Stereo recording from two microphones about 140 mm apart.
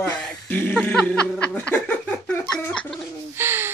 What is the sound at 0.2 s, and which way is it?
Snicker, 15° left (ahead or behind).